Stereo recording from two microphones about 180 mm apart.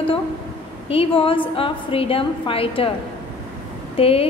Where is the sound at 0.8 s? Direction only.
30° left (ahead or behind).